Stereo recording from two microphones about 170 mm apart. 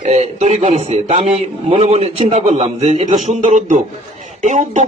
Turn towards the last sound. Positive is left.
turn(degrees=-45)  # may be behind; listen again after turning